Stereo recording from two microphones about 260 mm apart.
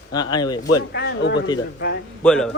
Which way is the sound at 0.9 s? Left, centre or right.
Left.